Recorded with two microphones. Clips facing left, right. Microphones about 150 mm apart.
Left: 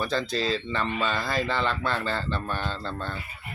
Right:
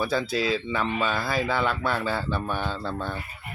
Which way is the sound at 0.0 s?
5° right (ahead or behind).